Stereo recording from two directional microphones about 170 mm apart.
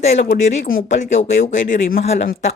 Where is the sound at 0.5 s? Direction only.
55° left (ahead or behind).